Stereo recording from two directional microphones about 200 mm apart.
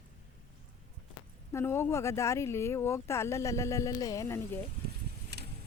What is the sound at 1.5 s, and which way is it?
Speech, 10° left (ahead or behind).